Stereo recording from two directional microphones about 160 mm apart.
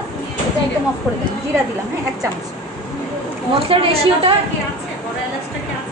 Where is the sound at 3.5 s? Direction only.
35° right (ahead or behind).